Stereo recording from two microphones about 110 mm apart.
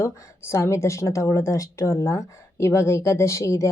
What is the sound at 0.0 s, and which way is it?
A woman's voice, 25° left (ahead or behind).